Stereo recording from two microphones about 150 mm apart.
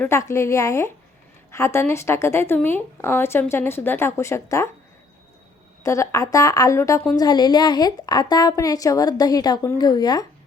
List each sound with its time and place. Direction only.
0.0 s a woman's voice: 20° left (ahead or behind)
5.8 s a woman's voice: 20° left (ahead or behind)